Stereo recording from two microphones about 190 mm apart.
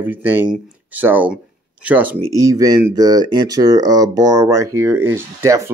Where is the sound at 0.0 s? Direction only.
10° right (ahead or behind).